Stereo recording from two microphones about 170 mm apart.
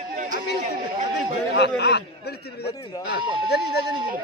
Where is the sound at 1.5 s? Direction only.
85° left.